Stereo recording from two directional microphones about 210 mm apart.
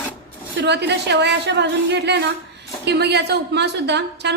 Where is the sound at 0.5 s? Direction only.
55° right (ahead or behind).